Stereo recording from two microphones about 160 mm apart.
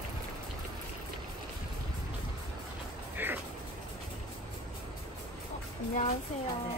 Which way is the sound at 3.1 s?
10° right (ahead or behind).